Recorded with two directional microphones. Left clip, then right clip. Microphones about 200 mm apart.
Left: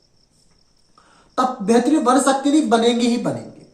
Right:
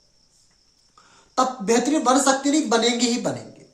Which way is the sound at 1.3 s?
35° right (ahead or behind).